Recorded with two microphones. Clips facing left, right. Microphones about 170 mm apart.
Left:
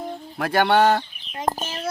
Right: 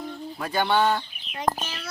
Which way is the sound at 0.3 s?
75° left (ahead or behind).